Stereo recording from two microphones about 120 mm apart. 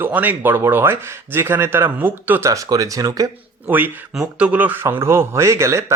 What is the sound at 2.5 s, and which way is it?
Speech, 30° right (ahead or behind).